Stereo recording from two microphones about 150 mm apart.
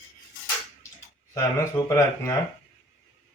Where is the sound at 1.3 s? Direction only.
20° left (ahead or behind).